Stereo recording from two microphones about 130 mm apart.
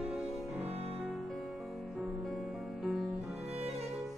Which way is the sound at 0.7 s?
55° right (ahead or behind).